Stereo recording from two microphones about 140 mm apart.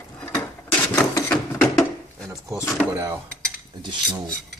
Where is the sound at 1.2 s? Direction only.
10° left (ahead or behind).